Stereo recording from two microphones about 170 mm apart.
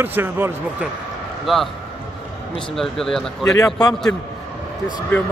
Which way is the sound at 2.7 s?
Centre (ahead or behind).